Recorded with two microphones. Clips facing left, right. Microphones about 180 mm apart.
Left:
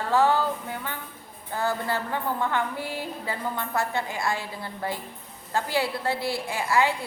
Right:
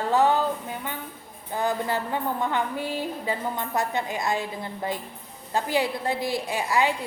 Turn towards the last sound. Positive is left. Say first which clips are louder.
# even
turn(degrees=-15)  # may be behind; listen again after turning